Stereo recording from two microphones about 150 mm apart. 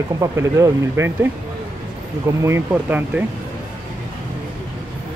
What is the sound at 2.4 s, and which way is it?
Speech, 15° right (ahead or behind).